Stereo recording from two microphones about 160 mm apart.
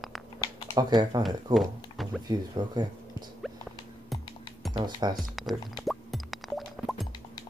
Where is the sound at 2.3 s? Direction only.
25° right (ahead or behind).